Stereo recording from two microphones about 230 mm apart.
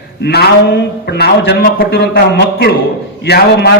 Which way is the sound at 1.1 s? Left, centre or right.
Left.